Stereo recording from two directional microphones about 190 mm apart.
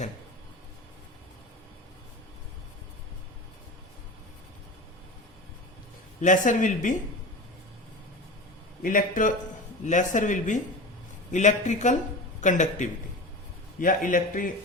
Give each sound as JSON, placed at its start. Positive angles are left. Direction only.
{"t": 6.2, "sound": "speech", "side_deg": 40}
{"t": 8.8, "sound": "speech", "side_deg": 45}